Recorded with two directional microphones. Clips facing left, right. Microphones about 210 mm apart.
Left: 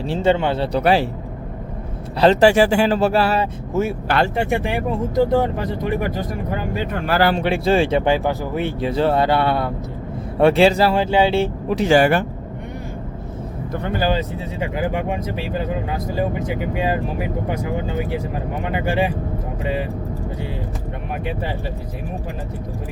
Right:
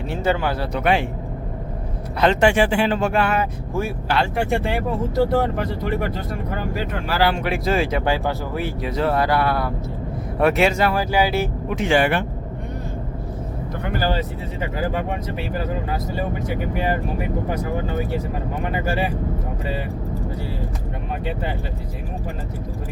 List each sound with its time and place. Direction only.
0.1 s speech: 25° left (ahead or behind)
0.8 s speech: 35° left (ahead or behind)
2.2 s speech: 35° left (ahead or behind)
3.8 s speech: 20° left (ahead or behind)
7.1 s speech: 45° left (ahead or behind)
7.3 s speech: 30° left (ahead or behind)
18.6 s speech: 20° left (ahead or behind)